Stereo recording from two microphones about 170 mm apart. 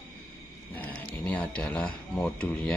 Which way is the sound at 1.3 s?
10° left (ahead or behind).